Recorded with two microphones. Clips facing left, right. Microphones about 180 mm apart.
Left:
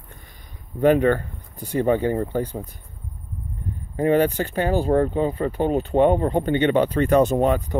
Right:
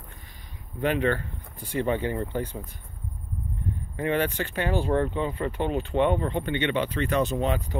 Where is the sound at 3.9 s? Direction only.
40° left (ahead or behind).